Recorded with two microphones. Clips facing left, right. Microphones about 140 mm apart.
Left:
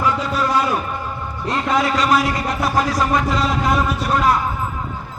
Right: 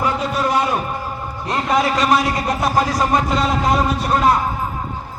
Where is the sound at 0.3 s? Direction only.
25° right (ahead or behind).